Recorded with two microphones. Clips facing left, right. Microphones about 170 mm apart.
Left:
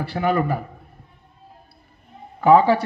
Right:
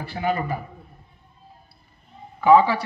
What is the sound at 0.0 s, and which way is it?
Speech, 60° left (ahead or behind).